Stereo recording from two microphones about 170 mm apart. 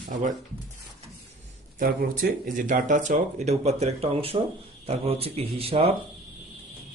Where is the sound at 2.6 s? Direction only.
50° right (ahead or behind); by 5.9 s 35° right (ahead or behind).